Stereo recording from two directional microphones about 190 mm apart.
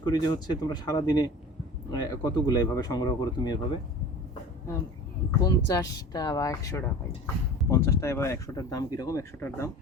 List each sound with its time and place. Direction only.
0.0 s speech: 20° left (ahead or behind)
5.4 s speech: 20° left (ahead or behind)